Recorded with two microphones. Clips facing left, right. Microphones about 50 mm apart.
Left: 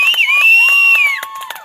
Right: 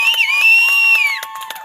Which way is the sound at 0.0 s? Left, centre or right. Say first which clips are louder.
Left 2 dB; left.